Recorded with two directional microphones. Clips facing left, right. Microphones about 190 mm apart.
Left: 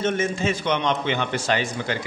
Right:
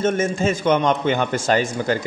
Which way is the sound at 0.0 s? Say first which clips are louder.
Right 4 dB; 45° right (ahead or behind).